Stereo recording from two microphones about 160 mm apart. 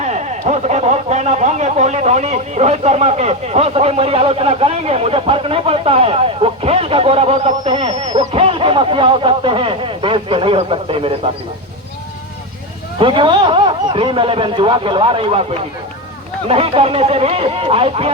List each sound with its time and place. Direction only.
0.0 s speech: 45° right (ahead or behind)
13.0 s speech: 30° right (ahead or behind)
16.5 s speech: 40° right (ahead or behind)